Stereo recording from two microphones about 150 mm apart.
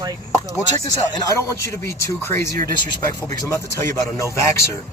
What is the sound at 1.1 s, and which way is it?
Speech, 20° left (ahead or behind).